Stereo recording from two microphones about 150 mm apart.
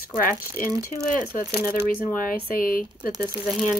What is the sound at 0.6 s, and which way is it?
Speech, 70° left (ahead or behind).